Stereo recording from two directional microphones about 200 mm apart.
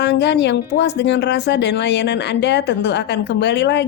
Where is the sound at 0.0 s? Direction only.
60° left (ahead or behind).